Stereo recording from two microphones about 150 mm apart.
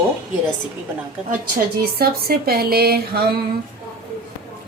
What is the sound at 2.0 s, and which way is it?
Speech, 90° right.